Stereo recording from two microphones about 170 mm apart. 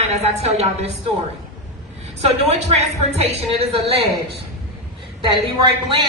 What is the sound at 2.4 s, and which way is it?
A woman's voice, 40° right (ahead or behind).